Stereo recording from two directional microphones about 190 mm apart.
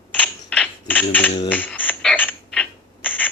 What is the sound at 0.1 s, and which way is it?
Coin, 5° left (ahead or behind).